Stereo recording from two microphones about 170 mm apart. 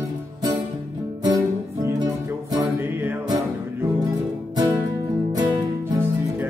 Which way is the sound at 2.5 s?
20° right (ahead or behind).